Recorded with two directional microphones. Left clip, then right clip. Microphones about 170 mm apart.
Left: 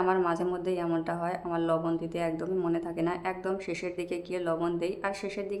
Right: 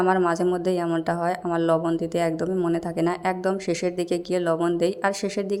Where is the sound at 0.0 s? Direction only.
35° right (ahead or behind).